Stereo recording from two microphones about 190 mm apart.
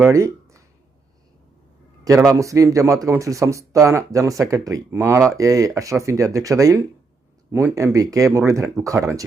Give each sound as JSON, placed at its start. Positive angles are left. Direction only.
{"t": 0.0, "sound": "speech", "side_deg": -15}
{"t": 2.0, "sound": "speech", "side_deg": -15}